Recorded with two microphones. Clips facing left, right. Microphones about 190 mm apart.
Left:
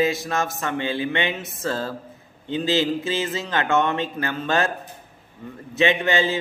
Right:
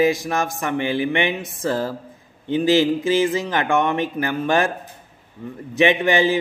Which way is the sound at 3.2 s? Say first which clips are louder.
Right 5 dB; 15° right (ahead or behind).